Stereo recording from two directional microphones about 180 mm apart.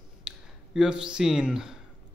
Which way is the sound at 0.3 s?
5° right (ahead or behind).